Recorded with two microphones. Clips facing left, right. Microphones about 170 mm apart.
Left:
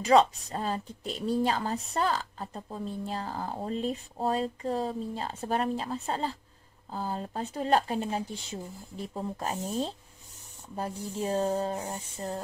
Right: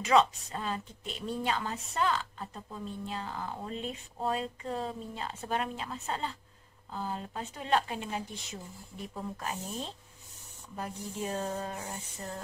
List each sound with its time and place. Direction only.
0.0 s speech: 35° left (ahead or behind)